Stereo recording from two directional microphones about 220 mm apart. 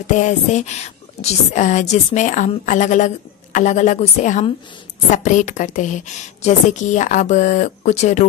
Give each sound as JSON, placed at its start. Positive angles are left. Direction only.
{"t": 0.0, "sound": "a woman's voice", "side_deg": 35}